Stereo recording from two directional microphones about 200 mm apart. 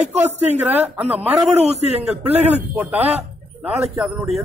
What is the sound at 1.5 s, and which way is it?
Speech, 35° right (ahead or behind).